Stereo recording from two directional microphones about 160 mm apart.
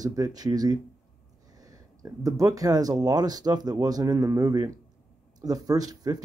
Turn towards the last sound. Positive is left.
turn(degrees=-25)  # may be behind; listen again after turning